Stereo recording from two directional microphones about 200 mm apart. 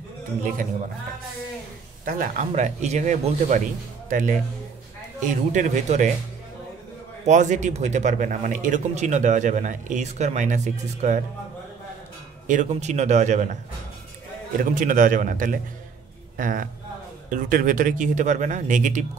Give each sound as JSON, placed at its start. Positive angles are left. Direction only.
{"t": 2.0, "sound": "a man's voice", "side_deg": -45}
{"t": 7.2, "sound": "a man's voice", "side_deg": -35}
{"t": 12.4, "sound": "a man's voice", "side_deg": -35}
{"t": 14.6, "sound": "a man's voice", "side_deg": -40}